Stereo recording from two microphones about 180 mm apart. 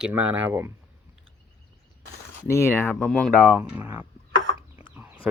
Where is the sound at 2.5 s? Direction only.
15° left (ahead or behind).